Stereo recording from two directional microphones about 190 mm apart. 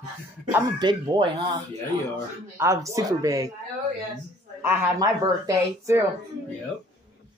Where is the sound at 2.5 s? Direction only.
15° right (ahead or behind).